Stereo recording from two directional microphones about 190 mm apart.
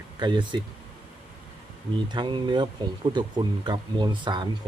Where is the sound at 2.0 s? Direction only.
25° right (ahead or behind).